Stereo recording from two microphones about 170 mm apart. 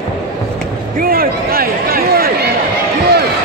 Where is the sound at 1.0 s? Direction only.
60° right (ahead or behind).